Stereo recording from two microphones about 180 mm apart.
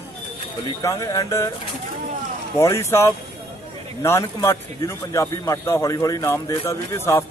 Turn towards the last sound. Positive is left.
turn(degrees=15)  # may be behind; listen again after turning